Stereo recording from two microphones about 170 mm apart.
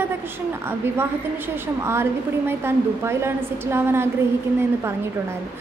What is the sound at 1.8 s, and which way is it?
A woman's voice, 15° right (ahead or behind).